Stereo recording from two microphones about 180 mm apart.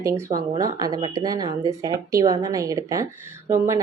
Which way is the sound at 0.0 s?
15° right (ahead or behind).